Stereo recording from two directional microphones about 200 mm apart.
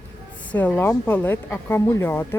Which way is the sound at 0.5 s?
10° left (ahead or behind).